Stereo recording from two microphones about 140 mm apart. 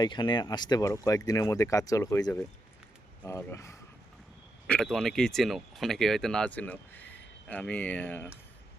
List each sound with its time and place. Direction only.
0.0 s speech: 35° left (ahead or behind)
4.6 s speech: 5° left (ahead or behind)